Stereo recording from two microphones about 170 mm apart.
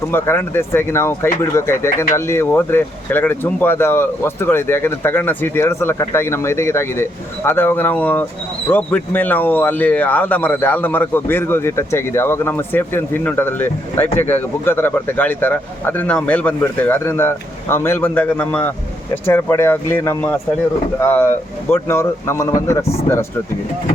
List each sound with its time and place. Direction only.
0.1 s speech: 15° left (ahead or behind)